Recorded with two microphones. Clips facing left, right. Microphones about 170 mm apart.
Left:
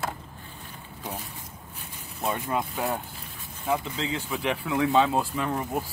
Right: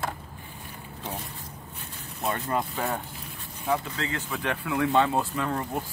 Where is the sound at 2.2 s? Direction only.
Centre (ahead or behind).